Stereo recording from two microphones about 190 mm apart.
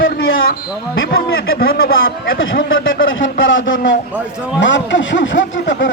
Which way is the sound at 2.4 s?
90° left.